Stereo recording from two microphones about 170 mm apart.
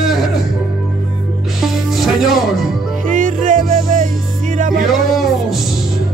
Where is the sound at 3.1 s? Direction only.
50° right (ahead or behind).